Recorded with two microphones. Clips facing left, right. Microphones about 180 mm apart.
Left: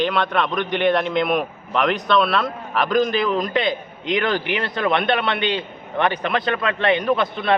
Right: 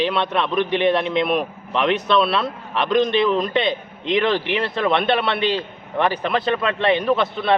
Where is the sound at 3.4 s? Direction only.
30° right (ahead or behind).